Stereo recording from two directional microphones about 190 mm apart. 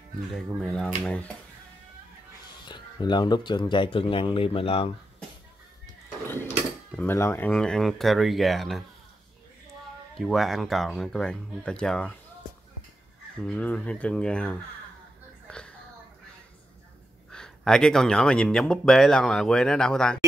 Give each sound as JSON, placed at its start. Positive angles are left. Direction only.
{"t": 0.3, "sound": "speech", "side_deg": 0}
{"t": 2.6, "sound": "speech", "side_deg": 25}
{"t": 6.9, "sound": "speech", "side_deg": 10}
{"t": 10.1, "sound": "speech", "side_deg": 0}
{"t": 13.4, "sound": "speech", "side_deg": 5}
{"t": 15.4, "sound": "a sound", "side_deg": 5}
{"t": 17.3, "sound": "speech", "side_deg": 5}